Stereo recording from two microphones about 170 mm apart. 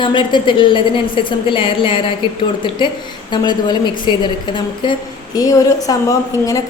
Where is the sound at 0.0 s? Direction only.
30° left (ahead or behind).